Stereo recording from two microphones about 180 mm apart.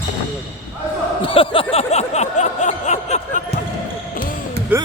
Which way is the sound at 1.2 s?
30° left (ahead or behind).